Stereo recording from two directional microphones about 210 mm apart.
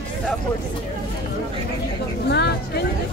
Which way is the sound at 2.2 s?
50° left (ahead or behind).